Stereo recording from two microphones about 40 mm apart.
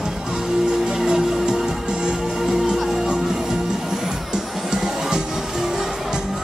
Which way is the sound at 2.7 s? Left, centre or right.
Centre.